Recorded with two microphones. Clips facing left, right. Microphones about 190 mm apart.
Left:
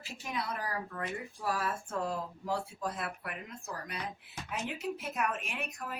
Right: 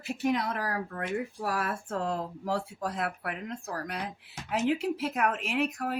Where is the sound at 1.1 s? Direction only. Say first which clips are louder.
Right 6 dB; 65° right (ahead or behind).